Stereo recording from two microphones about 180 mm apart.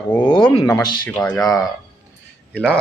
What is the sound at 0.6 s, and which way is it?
Speech, 25° left (ahead or behind).